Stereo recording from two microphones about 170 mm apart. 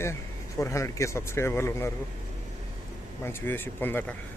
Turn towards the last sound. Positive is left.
turn(degrees=10)  # may be behind; listen again after turning